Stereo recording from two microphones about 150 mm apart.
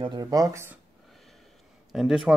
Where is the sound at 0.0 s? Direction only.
30° right (ahead or behind).